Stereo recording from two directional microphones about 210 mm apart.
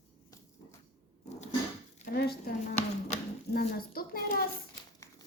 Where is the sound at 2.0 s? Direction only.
45° left (ahead or behind).